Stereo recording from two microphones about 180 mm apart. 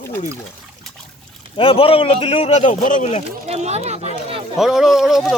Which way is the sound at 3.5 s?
35° right (ahead or behind).